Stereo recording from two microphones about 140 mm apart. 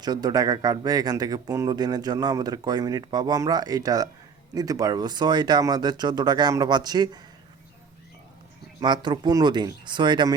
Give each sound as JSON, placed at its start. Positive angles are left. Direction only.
{"t": 0.0, "sound": "speech", "side_deg": -30}
{"t": 8.8, "sound": "speech", "side_deg": -30}